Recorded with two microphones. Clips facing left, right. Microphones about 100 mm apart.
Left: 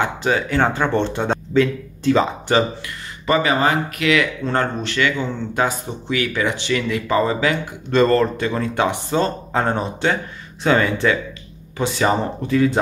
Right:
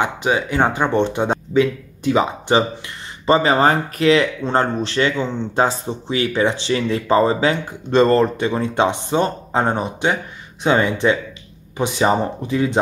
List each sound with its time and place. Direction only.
0.0 s speech: 15° right (ahead or behind)
3.3 s speech: 30° right (ahead or behind)